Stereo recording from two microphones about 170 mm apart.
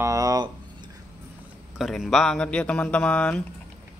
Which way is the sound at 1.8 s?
Centre (ahead or behind).